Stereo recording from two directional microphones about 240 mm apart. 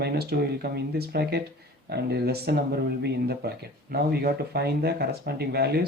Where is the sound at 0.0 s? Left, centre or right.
Right.